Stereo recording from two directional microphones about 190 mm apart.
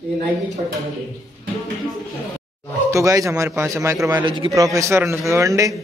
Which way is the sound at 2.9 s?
15° right (ahead or behind).